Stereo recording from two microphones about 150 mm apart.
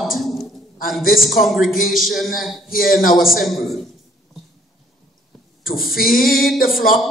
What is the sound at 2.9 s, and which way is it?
Speech, 70° left (ahead or behind).